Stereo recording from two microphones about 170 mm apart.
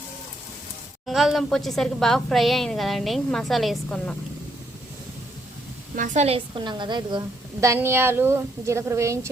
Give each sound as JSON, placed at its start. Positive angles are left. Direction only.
{"t": 1.0, "sound": "a woman's voice", "side_deg": 0}
{"t": 6.0, "sound": "a woman's voice", "side_deg": -40}
{"t": 7.6, "sound": "a woman's voice", "side_deg": -15}